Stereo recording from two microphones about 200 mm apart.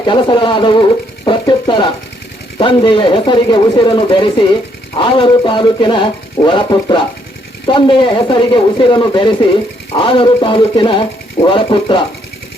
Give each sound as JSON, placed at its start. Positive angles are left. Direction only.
{"t": 0.0, "sound": "speech", "side_deg": 25}